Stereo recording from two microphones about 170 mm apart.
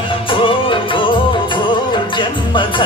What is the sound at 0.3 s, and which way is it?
Music, 30° left (ahead or behind).